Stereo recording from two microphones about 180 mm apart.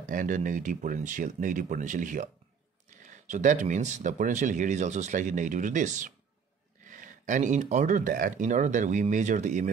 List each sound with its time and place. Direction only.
0.1 s speech: 45° right (ahead or behind)